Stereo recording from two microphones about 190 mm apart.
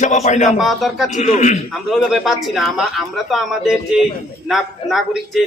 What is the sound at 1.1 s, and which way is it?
Speech, 40° left (ahead or behind).